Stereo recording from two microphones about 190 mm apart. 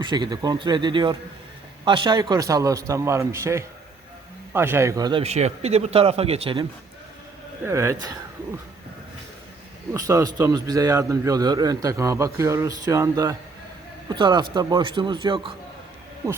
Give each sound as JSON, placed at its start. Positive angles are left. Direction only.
{"t": 0.0, "sound": "a man's voice", "side_deg": -25}
{"t": 5.2, "sound": "speech", "side_deg": -35}
{"t": 7.6, "sound": "a man's voice", "side_deg": -15}
{"t": 9.9, "sound": "a man's voice", "side_deg": -15}